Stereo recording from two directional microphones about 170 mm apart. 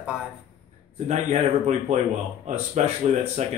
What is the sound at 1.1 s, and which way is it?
Speech, 40° right (ahead or behind).